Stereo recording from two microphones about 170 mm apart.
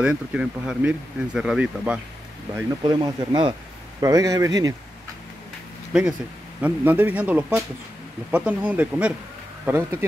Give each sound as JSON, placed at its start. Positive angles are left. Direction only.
{"t": 0.0, "sound": "speech", "side_deg": -5}
{"t": 2.8, "sound": "a man's voice", "side_deg": -25}
{"t": 6.6, "sound": "speech", "side_deg": -10}